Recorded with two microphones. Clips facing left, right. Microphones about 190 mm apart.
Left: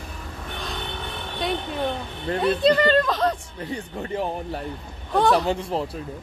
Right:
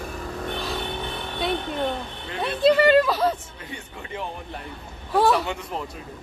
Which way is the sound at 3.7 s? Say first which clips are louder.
Left 7 dB; 40° left (ahead or behind).